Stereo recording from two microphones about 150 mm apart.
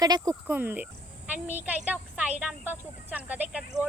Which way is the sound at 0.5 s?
10° right (ahead or behind).